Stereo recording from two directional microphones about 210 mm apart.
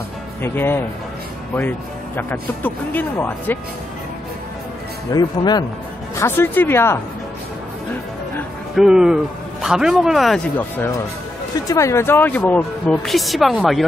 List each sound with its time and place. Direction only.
0.4 s speech: 10° left (ahead or behind)
5.1 s speech: 20° left (ahead or behind)
8.7 s speech: 5° right (ahead or behind)
11.7 s speech: 15° left (ahead or behind)